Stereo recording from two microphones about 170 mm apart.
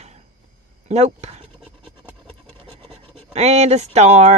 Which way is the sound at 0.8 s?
40° right (ahead or behind).